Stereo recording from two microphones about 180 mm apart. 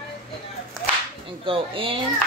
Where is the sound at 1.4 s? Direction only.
30° right (ahead or behind).